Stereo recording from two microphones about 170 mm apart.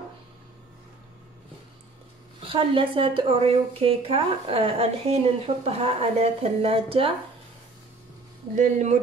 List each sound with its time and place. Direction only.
2.4 s speech: 30° right (ahead or behind)
8.5 s speech: 45° right (ahead or behind)